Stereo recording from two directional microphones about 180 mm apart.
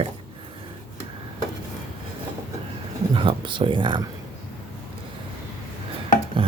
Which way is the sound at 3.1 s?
25° right (ahead or behind).